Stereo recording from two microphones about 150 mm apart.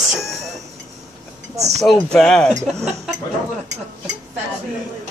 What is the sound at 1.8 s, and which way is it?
Speech, 5° left (ahead or behind).